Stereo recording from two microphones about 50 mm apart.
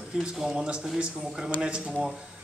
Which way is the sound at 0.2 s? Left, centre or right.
Centre.